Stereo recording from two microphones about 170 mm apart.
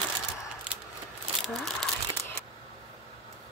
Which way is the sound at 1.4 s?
5° left (ahead or behind).